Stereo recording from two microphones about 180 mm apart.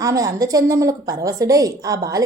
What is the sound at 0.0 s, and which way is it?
A woman's voice, 20° right (ahead or behind).